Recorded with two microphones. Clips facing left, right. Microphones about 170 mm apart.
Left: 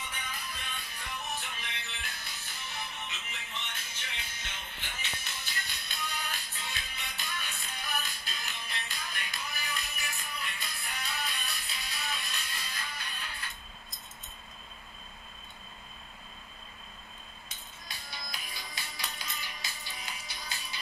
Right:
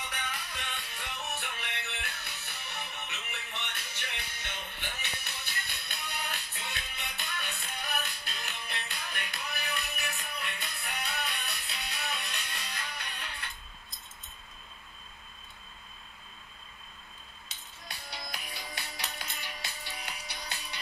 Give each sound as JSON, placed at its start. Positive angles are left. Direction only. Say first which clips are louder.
{"t": 0.1, "sound": "music", "louder": "right 2 dB", "side_deg": -75}
{"t": 17.8, "sound": "music", "louder": "right 3 dB", "side_deg": -65}